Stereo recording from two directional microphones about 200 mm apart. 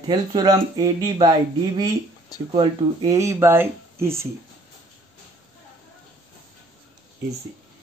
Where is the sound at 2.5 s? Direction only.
20° right (ahead or behind).